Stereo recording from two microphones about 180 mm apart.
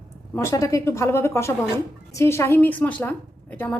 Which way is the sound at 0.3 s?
15° left (ahead or behind).